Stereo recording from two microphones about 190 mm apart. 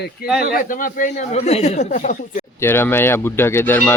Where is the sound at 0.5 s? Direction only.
45° left (ahead or behind).